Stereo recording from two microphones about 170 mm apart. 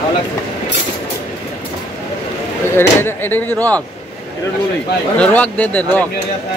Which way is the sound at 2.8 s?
15° left (ahead or behind).